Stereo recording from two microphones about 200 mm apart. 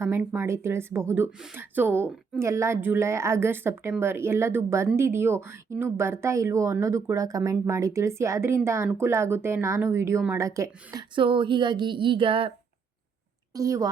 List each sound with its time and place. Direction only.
0.0 s a woman's voice: 10° right (ahead or behind); by 12.5 s 25° right (ahead or behind)
13.5 s a woman's voice: 15° right (ahead or behind)